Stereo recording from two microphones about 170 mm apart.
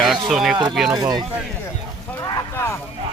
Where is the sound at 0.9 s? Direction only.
25° right (ahead or behind).